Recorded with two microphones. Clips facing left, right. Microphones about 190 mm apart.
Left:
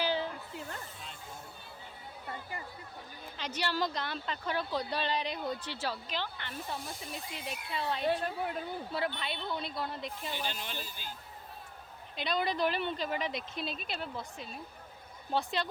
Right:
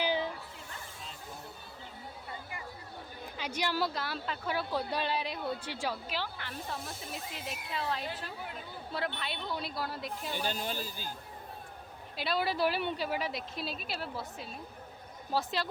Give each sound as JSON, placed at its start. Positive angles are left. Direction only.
{"t": 0.0, "sound": "a sound", "side_deg": -15}
{"t": 3.3, "sound": "speech", "side_deg": -10}
{"t": 8.0, "sound": "a woman's voice", "side_deg": 55}
{"t": 8.9, "sound": "speech", "side_deg": 0}
{"t": 10.3, "sound": "speech", "side_deg": -45}
{"t": 12.1, "sound": "speech", "side_deg": -5}